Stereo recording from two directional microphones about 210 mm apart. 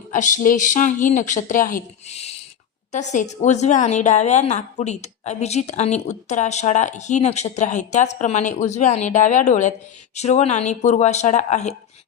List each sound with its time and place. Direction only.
0.1 s a woman's voice: 35° left (ahead or behind)